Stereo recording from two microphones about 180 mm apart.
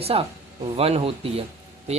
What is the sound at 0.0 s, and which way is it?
Speech, 35° right (ahead or behind).